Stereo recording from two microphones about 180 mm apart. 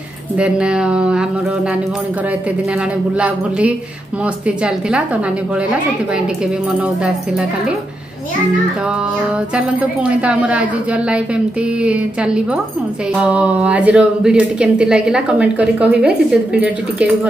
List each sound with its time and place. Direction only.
0.4 s speech: 5° right (ahead or behind)
3.2 s a woman's voice: 5° right (ahead or behind)
9.8 s a woman's voice: 5° right (ahead or behind)